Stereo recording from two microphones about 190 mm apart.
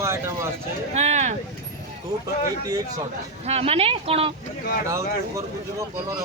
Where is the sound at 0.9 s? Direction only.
35° right (ahead or behind).